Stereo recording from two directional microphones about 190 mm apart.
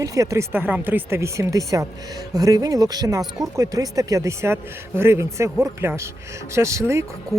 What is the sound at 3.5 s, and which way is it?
Speech, 15° right (ahead or behind).